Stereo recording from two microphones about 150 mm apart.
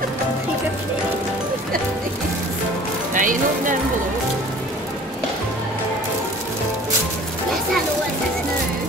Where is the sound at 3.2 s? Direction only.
60° right (ahead or behind).